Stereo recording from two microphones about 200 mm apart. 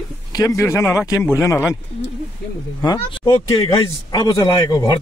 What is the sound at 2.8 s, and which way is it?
Speech, 20° left (ahead or behind).